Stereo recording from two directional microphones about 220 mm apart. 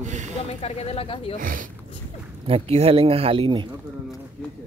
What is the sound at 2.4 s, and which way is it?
Speech, 25° right (ahead or behind).